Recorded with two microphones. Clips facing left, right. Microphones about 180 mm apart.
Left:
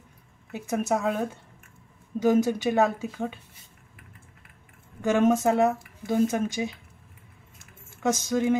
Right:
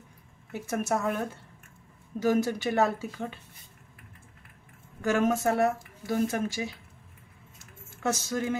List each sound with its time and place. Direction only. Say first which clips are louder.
0.5 s speech: left 3 dB; 15° left (ahead or behind)
2.1 s speech: left 4 dB; 20° left (ahead or behind)
5.0 s speech: left 4 dB; 20° left (ahead or behind)
8.0 s speech: left 5 dB; 15° left (ahead or behind)